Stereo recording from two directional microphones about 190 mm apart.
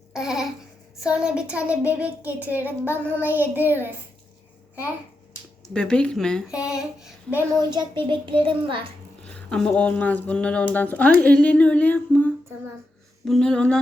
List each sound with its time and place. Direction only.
0.1 s a sound: centre (ahead or behind)
1.0 s a child's voice: 5° right (ahead or behind)
5.7 s speech: 5° left (ahead or behind)
7.6 s a child's voice: 25° right (ahead or behind)
9.2 s speech: 5° left (ahead or behind)